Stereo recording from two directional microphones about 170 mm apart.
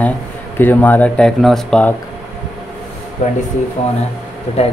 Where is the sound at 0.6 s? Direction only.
10° left (ahead or behind).